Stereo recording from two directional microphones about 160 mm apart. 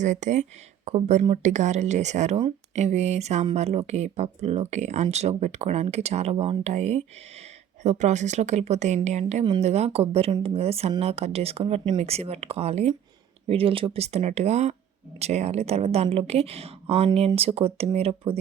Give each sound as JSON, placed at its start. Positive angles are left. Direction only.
{"t": 0.0, "sound": "speech", "side_deg": -50}